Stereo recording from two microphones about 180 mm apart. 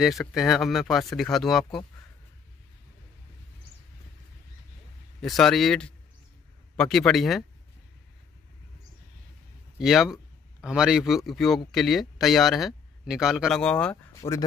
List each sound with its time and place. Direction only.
0.0 s a man's voice: centre (ahead or behind)
5.2 s a man's voice: centre (ahead or behind)
9.8 s a man's voice: centre (ahead or behind)
14.2 s speech: 35° left (ahead or behind)